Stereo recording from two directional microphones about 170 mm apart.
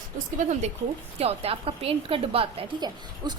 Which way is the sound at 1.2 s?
35° right (ahead or behind).